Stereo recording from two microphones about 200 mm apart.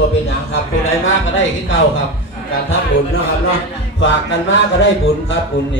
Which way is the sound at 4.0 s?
65° left (ahead or behind).